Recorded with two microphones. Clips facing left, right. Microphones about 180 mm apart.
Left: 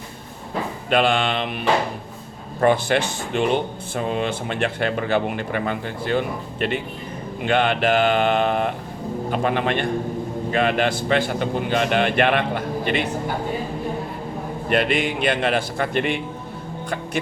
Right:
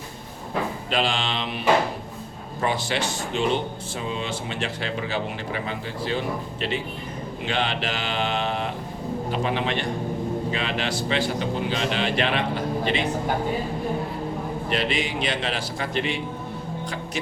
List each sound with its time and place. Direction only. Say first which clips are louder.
0.9 s speech: left 9 dB; 55° left (ahead or behind)
2.6 s speech: left 7 dB; 55° left (ahead or behind)
14.7 s speech: left 6 dB; 55° left (ahead or behind)